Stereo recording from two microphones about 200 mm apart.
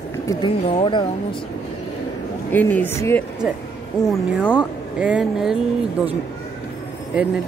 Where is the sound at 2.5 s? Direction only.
10° left (ahead or behind).